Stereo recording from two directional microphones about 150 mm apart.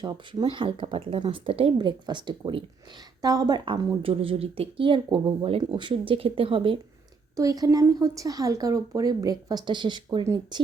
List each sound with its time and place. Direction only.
0.0 s speech: 30° right (ahead or behind)
7.3 s speech: 25° right (ahead or behind)